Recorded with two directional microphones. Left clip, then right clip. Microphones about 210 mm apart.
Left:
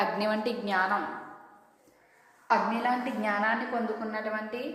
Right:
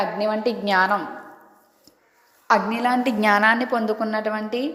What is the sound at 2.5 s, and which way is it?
A woman's voice, 55° right (ahead or behind).